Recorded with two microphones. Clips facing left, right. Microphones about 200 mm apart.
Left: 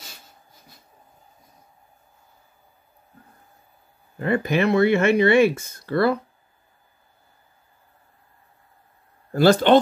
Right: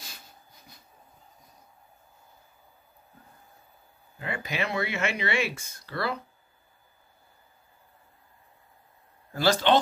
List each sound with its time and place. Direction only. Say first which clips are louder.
4.2 s speech: left 11 dB; 55° left (ahead or behind)
9.3 s speech: left 8 dB; 55° left (ahead or behind)